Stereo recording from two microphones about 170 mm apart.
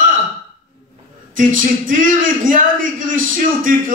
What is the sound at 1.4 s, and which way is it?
Speech, 50° right (ahead or behind).